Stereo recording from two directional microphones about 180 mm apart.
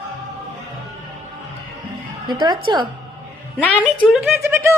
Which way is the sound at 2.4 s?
25° right (ahead or behind).